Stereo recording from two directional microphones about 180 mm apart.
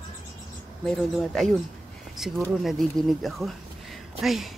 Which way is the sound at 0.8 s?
Centre (ahead or behind).